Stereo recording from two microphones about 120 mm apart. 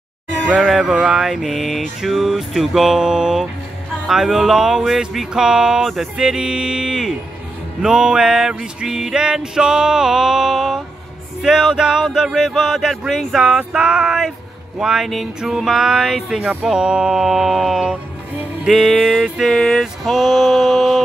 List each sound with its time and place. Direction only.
0.6 s music: 5° right (ahead or behind)